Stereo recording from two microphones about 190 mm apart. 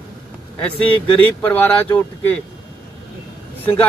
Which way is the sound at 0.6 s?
5° left (ahead or behind).